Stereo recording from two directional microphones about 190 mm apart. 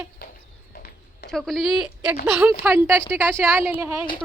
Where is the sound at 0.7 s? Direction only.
50° left (ahead or behind).